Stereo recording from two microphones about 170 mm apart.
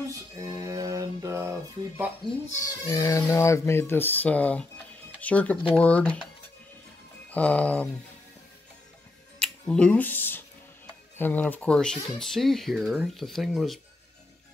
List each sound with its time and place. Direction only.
0.4 s mantra: 20° right (ahead or behind)
2.6 s speech: 20° left (ahead or behind)
7.2 s speech: 10° left (ahead or behind)
9.4 s a sound: 5° left (ahead or behind)
11.1 s speech: 10° left (ahead or behind)